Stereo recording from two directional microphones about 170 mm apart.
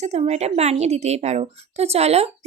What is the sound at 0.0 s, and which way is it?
A woman's voice, 40° right (ahead or behind).